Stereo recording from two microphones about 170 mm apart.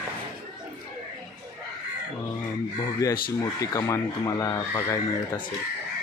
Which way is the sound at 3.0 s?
20° left (ahead or behind).